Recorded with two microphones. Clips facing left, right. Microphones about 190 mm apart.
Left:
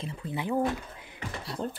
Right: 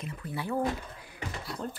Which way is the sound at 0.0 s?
25° left (ahead or behind).